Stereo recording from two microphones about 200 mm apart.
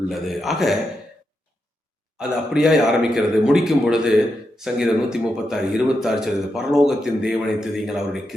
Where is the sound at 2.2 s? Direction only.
5° right (ahead or behind).